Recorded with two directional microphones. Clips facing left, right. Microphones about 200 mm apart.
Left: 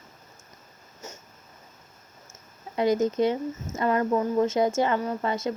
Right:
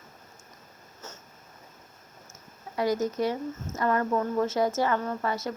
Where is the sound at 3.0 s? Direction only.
20° left (ahead or behind).